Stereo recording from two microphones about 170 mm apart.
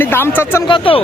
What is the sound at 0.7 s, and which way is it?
Speech, 30° left (ahead or behind).